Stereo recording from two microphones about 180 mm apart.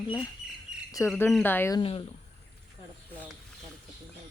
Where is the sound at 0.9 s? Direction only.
15° left (ahead or behind).